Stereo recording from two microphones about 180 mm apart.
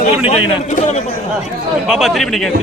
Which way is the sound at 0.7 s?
40° left (ahead or behind).